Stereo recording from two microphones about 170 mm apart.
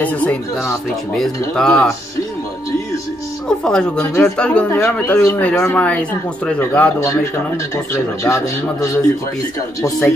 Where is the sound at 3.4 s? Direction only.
5° left (ahead or behind).